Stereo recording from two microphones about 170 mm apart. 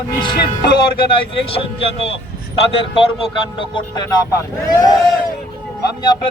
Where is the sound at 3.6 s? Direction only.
25° left (ahead or behind).